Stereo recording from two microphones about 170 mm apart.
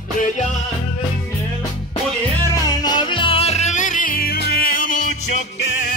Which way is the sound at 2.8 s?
25° left (ahead or behind).